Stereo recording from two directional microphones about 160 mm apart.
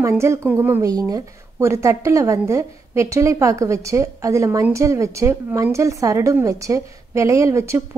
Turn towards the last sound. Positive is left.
turn(degrees=-20)  # may be behind; listen again after turning